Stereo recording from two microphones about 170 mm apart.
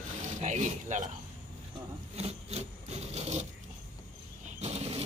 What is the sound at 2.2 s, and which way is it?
Wood, 40° right (ahead or behind).